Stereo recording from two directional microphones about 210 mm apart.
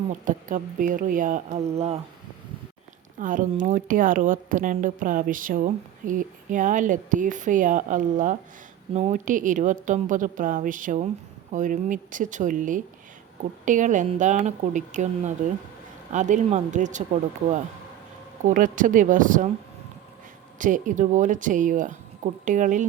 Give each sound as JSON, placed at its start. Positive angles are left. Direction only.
{"t": 0.1, "sound": "speech", "side_deg": -40}
{"t": 3.2, "sound": "speech", "side_deg": -40}
{"t": 18.4, "sound": "speech", "side_deg": -40}
{"t": 20.6, "sound": "speech", "side_deg": -40}